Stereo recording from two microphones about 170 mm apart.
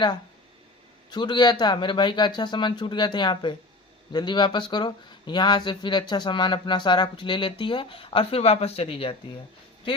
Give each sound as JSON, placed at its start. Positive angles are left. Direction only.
{"t": 1.1, "sound": "speech", "side_deg": 25}